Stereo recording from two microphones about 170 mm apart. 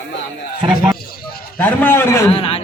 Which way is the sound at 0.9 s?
60° left (ahead or behind).